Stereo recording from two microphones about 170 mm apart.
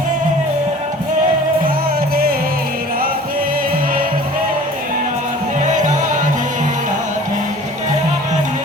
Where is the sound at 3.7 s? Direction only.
55° right (ahead or behind).